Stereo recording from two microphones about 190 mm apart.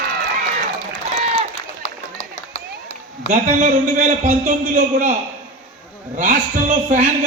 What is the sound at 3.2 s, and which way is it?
A man's voice, 40° right (ahead or behind).